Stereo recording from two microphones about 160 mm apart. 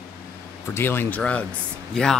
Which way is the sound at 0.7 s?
15° left (ahead or behind).